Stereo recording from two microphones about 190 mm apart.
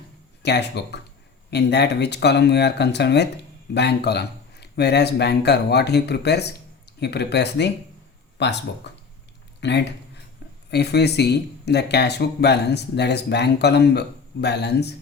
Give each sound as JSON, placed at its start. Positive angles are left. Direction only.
{"t": 0.4, "sound": "speech", "side_deg": 60}
{"t": 8.9, "sound": "a sound", "side_deg": 65}
{"t": 9.6, "sound": "speech", "side_deg": 65}